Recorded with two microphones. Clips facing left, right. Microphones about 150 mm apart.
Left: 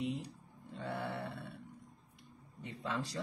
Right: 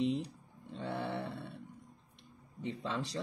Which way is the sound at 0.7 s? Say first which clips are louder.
Right 2 dB; 20° right (ahead or behind).